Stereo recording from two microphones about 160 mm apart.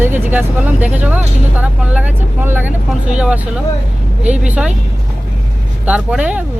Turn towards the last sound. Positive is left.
turn(degrees=-5)  # may be behind; listen again after turning